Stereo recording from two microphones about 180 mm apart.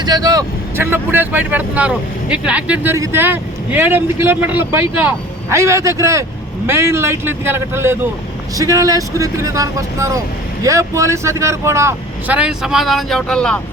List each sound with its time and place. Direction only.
0.0 s speech: 20° right (ahead or behind); by 13.6 s 5° left (ahead or behind)